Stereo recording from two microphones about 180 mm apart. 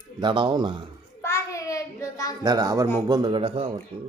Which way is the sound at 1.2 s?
15° left (ahead or behind).